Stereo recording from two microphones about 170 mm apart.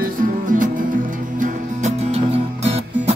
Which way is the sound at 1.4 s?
40° right (ahead or behind).